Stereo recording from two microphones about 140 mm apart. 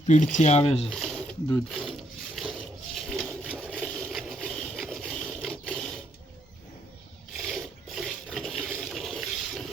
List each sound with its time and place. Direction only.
0.1 s speech: 60° left (ahead or behind); by 0.9 s 45° left (ahead or behind)
0.9 s a sound: 5° left (ahead or behind)
1.7 s wood: centre (ahead or behind)
3.7 s a sound: 5° left (ahead or behind)
7.3 s filing: centre (ahead or behind)
8.8 s water: centre (ahead or behind)